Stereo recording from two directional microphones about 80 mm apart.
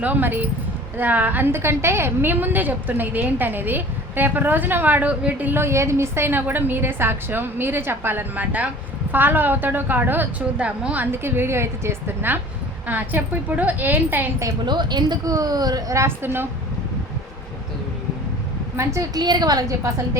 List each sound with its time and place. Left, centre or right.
0.0 s a woman's voice: right
14.6 s speech: right
16.0 s a woman's voice: right
18.8 s a woman's voice: right
19.1 s speech: right